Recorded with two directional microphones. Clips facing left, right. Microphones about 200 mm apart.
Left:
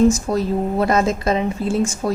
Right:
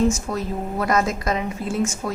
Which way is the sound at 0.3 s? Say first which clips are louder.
Left 7 dB; 30° left (ahead or behind).